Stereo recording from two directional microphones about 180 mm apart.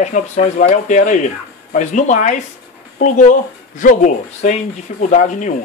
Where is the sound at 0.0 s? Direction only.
40° left (ahead or behind).